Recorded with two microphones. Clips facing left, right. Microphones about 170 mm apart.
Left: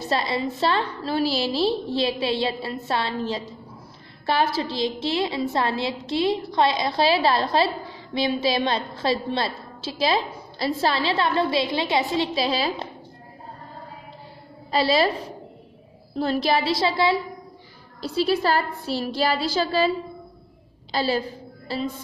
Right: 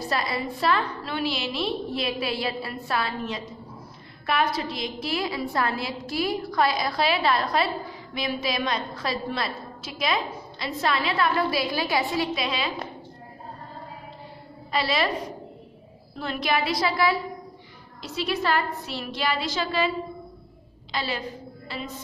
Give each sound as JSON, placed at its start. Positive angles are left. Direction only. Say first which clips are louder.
{"t": 0.1, "sound": "a woman's voice", "louder": "left 5 dB", "side_deg": 25}
{"t": 14.7, "sound": "a woman's voice", "louder": "left 5 dB", "side_deg": 30}
{"t": 20.9, "sound": "a woman's voice", "louder": "left 7 dB", "side_deg": 35}
{"t": 21.6, "sound": "music", "louder": "left 8 dB", "side_deg": 35}